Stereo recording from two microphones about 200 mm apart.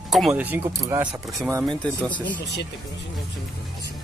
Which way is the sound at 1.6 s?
5° left (ahead or behind).